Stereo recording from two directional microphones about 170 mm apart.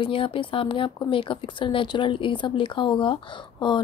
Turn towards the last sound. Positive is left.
turn(degrees=30)  # may be behind; listen again after turning